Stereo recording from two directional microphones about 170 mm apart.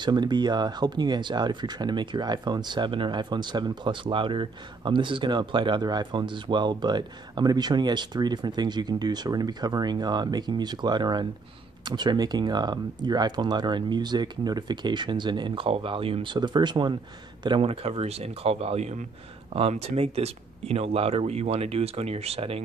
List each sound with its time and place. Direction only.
0.0 s speech: 25° right (ahead or behind)